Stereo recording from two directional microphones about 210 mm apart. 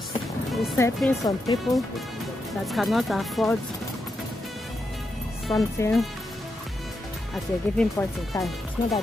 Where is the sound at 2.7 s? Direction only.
Centre (ahead or behind).